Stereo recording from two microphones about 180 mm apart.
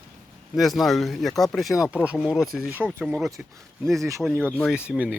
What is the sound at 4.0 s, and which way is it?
Speech, 15° right (ahead or behind).